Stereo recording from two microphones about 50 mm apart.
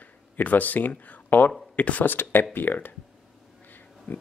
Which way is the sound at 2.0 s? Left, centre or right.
Left.